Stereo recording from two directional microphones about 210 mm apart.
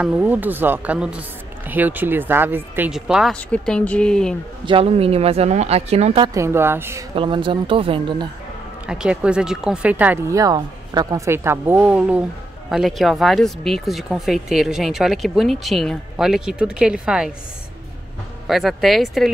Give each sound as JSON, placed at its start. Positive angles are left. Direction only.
{"t": 0.0, "sound": "speech", "side_deg": -10}
{"t": 4.6, "sound": "speech", "side_deg": -25}
{"t": 7.2, "sound": "speech", "side_deg": -25}
{"t": 8.8, "sound": "speech", "side_deg": -5}
{"t": 18.5, "sound": "speech", "side_deg": 0}